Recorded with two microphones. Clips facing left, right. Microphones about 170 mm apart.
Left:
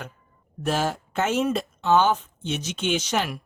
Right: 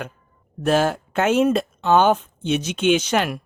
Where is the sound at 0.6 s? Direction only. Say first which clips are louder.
Right 6 dB; 60° right (ahead or behind).